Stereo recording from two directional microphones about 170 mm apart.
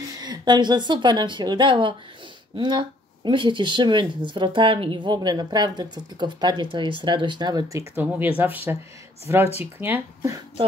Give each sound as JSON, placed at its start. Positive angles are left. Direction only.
{"t": 0.2, "sound": "a woman's voice", "side_deg": -25}
{"t": 7.7, "sound": "speech", "side_deg": -10}